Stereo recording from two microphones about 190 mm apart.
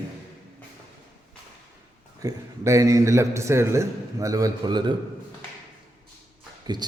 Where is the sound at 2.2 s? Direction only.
15° right (ahead or behind).